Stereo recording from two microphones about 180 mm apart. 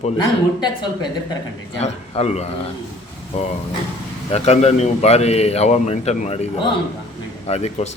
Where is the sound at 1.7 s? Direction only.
35° left (ahead or behind).